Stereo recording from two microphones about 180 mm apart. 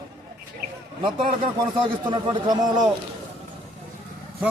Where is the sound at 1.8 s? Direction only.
25° right (ahead or behind).